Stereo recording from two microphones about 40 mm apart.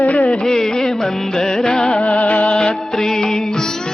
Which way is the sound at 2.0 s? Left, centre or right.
Left.